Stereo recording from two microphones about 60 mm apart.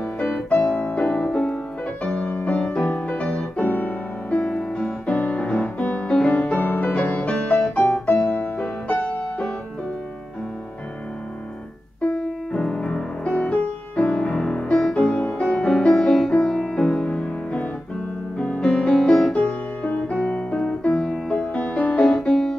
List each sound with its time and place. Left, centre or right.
0.5 s music: left
4.4 s music: centre
7.4 s piano: left
8.1 s music: left
12.1 s music: centre
15.1 s music: left
15.4 s music: centre
19.3 s music: left
22.1 s music: centre